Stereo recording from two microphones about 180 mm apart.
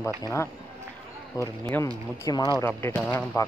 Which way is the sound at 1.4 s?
15° left (ahead or behind).